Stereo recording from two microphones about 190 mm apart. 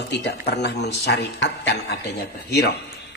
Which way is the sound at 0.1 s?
60° left (ahead or behind).